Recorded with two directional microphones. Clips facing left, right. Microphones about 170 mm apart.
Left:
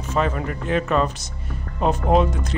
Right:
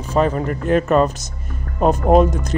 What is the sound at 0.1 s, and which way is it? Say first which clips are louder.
Speech: right 5 dB; 40° right (ahead or behind).